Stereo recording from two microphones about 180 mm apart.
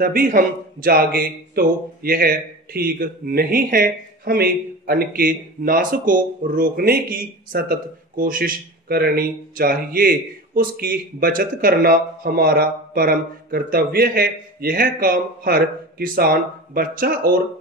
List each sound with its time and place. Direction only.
0.0 s a man's voice: 55° right (ahead or behind)